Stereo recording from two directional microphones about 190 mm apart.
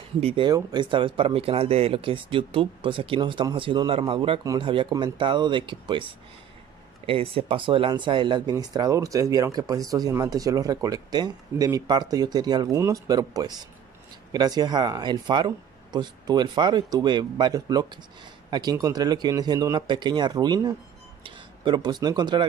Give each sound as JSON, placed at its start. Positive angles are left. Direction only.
{"t": 0.2, "sound": "speech", "side_deg": -30}
{"t": 7.1, "sound": "speech", "side_deg": -30}